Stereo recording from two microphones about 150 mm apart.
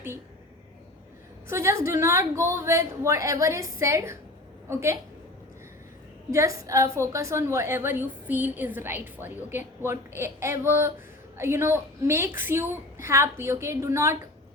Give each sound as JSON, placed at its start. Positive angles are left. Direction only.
{"t": 1.5, "sound": "a woman's voice", "side_deg": -20}
{"t": 6.3, "sound": "a woman's voice", "side_deg": -20}